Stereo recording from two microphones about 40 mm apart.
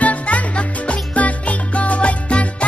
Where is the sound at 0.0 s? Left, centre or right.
Left.